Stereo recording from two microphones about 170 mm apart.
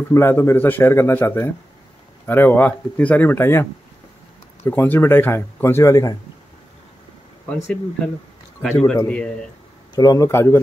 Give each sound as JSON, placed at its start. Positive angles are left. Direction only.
{"t": 0.1, "sound": "speech", "side_deg": 15}
{"t": 4.6, "sound": "speech", "side_deg": 10}
{"t": 8.7, "sound": "speech", "side_deg": 10}
{"t": 9.9, "sound": "speech", "side_deg": 20}